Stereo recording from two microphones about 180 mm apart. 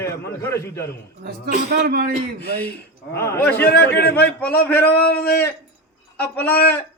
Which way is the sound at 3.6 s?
65° left (ahead or behind).